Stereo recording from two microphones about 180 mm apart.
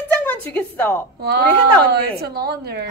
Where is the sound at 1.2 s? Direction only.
65° right (ahead or behind).